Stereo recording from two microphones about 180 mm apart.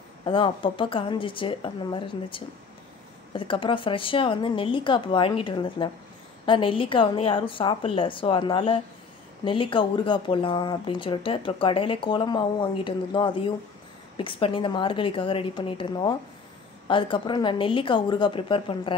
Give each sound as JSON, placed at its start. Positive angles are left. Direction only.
{"t": 0.2, "sound": "speech", "side_deg": 30}